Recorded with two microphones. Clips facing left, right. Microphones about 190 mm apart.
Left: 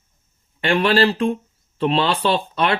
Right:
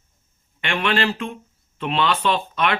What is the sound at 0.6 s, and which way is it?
Speech, 35° left (ahead or behind).